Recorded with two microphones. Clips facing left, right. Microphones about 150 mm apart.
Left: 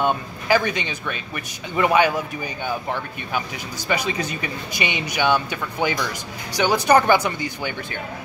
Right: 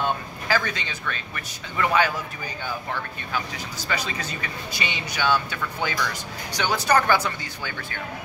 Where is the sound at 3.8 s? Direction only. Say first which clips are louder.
Left 6 dB; 15° left (ahead or behind).